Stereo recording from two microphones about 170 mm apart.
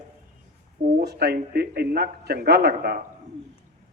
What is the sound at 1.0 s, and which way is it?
Speech, 75° right (ahead or behind).